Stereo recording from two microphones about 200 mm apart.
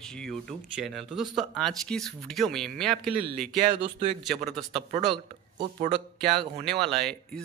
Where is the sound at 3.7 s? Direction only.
25° right (ahead or behind).